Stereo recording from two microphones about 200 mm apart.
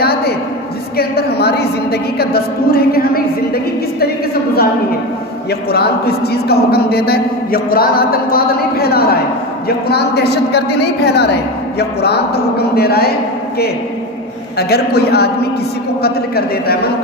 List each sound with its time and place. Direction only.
0.0 s a sound: 50° left (ahead or behind)
0.9 s a man's voice: 50° left (ahead or behind)
5.5 s a man's voice: 50° left (ahead or behind)
14.6 s a man's voice: 50° left (ahead or behind)